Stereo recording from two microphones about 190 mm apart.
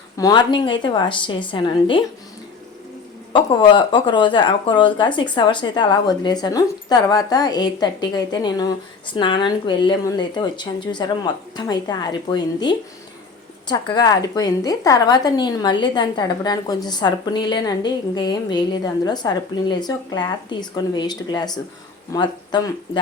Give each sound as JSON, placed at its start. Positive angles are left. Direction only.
{"t": 0.2, "sound": "a woman's voice", "side_deg": 20}
{"t": 3.3, "sound": "a woman's voice", "side_deg": 25}